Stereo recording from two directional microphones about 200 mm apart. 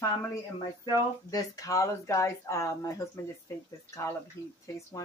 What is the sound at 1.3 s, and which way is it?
Speech, 15° left (ahead or behind).